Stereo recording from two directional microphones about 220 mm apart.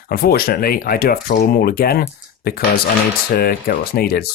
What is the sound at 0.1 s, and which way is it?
Speech, 45° left (ahead or behind).